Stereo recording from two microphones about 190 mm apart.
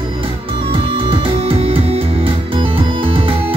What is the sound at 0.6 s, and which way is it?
Music, 30° right (ahead or behind).